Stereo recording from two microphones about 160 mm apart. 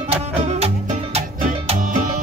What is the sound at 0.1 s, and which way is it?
Music, 40° right (ahead or behind).